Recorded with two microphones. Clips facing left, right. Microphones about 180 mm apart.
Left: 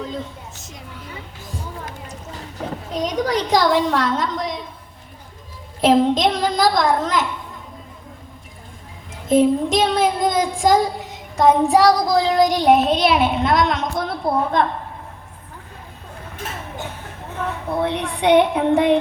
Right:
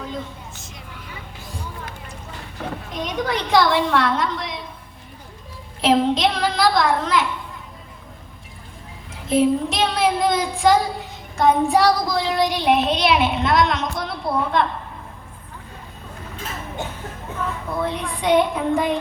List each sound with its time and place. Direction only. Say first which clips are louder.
0.1 s a sound: left 1 dB; 40° left (ahead or behind)
3.0 s a woman's voice: left 4 dB; 40° left (ahead or behind)
5.8 s speech: left 2 dB; 45° left (ahead or behind)
9.3 s speech: left 3 dB; 45° left (ahead or behind)
17.8 s a woman's voice: left 4 dB; 65° left (ahead or behind)